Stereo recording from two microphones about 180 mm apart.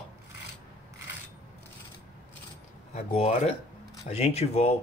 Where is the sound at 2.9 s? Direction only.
35° left (ahead or behind).